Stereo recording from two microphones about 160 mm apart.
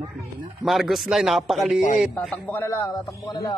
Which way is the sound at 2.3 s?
10° left (ahead or behind).